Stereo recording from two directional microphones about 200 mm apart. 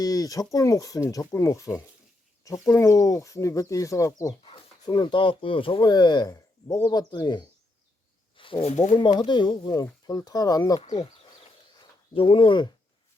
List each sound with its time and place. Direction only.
0.0 s speech: 20° left (ahead or behind); by 8.9 s 35° left (ahead or behind)
9.0 s speech: 20° left (ahead or behind)
10.8 s speech: 30° left (ahead or behind)
12.1 s speech: 25° left (ahead or behind)